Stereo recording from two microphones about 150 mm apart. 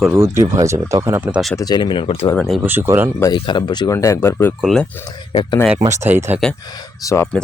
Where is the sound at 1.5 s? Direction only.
25° left (ahead or behind).